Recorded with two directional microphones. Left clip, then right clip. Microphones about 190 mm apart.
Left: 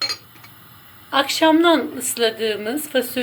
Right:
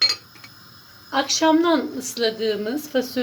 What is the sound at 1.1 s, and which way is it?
A woman's voice, 15° right (ahead or behind).